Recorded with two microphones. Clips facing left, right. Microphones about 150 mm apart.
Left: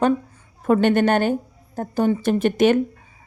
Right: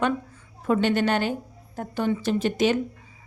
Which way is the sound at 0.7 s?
55° left (ahead or behind).